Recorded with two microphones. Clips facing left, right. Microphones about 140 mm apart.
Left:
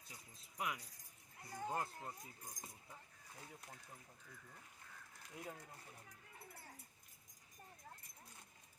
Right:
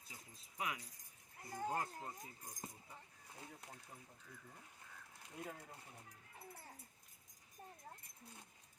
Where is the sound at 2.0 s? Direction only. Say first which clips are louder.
Right 1 dB; 10° right (ahead or behind).